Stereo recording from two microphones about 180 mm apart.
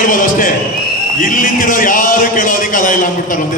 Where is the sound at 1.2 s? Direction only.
50° left (ahead or behind).